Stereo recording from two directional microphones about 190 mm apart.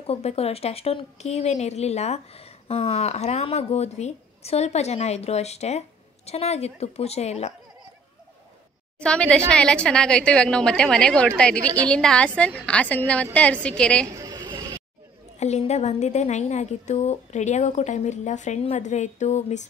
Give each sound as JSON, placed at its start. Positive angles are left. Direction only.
{"t": 0.0, "sound": "speech", "side_deg": 35}
{"t": 9.0, "sound": "a woman's voice", "side_deg": 5}
{"t": 14.1, "sound": "a sound", "side_deg": -20}
{"t": 15.3, "sound": "speech", "side_deg": 35}